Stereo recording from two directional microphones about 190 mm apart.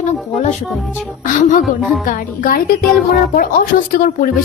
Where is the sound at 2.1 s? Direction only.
45° left (ahead or behind).